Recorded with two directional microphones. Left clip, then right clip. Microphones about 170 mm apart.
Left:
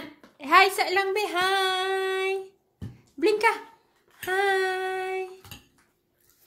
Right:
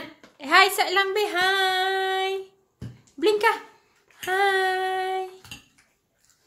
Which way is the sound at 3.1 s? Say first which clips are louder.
Right 2 dB; 5° right (ahead or behind).